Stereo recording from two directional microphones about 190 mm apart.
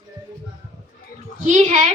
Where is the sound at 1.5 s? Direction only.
40° right (ahead or behind).